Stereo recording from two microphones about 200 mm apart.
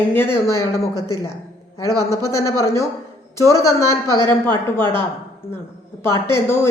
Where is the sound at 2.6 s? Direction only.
15° left (ahead or behind).